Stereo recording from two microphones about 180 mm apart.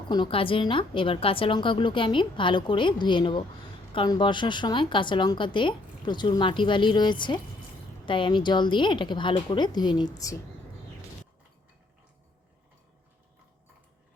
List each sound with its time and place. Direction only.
0.1 s a woman's voice: 30° left (ahead or behind)